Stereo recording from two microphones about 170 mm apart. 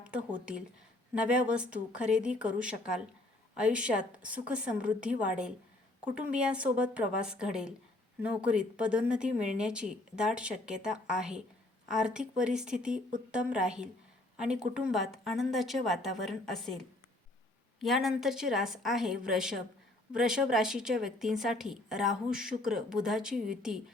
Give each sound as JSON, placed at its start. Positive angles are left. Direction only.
{"t": 1.1, "sound": "a woman's voice", "side_deg": -5}
{"t": 12.9, "sound": "speech", "side_deg": -50}
{"t": 13.5, "sound": "a woman's voice", "side_deg": -5}